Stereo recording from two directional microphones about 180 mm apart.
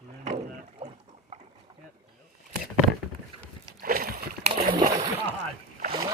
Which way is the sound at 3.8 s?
55° right (ahead or behind).